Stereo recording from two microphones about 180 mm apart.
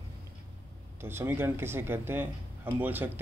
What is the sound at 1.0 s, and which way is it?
A man's voice, 15° right (ahead or behind).